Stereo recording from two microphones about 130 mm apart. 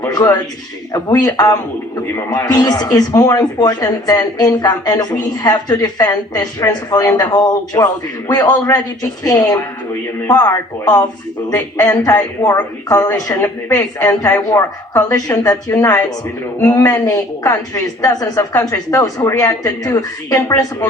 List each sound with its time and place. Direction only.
0.1 s a woman's voice: 30° left (ahead or behind)